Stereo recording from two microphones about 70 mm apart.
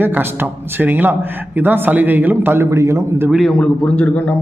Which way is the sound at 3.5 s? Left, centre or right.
Centre.